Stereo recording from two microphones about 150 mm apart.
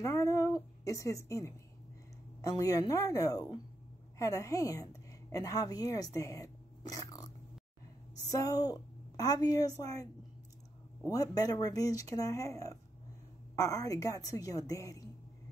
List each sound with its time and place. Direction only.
0.0 s speech: 20° left (ahead or behind)
8.3 s a woman's voice: 25° left (ahead or behind)
11.1 s speech: 25° left (ahead or behind)